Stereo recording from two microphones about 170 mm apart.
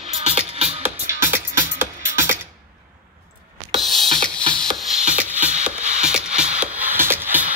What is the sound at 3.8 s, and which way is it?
Music, centre (ahead or behind).